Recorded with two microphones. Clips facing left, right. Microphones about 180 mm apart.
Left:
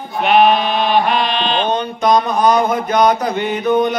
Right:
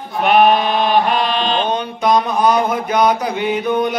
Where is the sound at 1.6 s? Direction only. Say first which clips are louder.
Left 1 dB; 5° right (ahead or behind).